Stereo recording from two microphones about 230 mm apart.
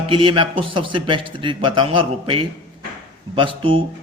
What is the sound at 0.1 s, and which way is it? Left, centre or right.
A man's voice, right.